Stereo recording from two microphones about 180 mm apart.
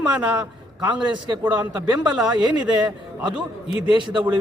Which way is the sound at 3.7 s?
30° left (ahead or behind).